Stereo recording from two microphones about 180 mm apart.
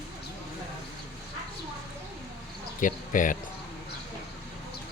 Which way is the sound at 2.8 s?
45° left (ahead or behind).